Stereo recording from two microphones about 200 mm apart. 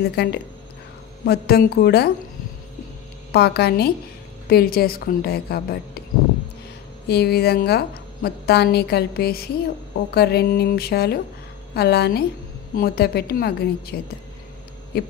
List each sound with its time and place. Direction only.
0.0 s a woman's voice: 55° left (ahead or behind)
3.3 s a woman's voice: 55° left (ahead or behind)
7.1 s a woman's voice: 55° left (ahead or behind)